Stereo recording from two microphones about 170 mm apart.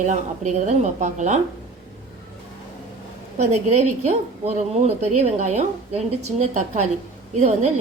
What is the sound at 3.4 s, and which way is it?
A woman's voice, 40° right (ahead or behind).